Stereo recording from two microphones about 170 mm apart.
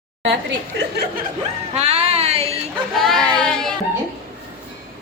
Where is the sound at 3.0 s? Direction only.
Centre (ahead or behind).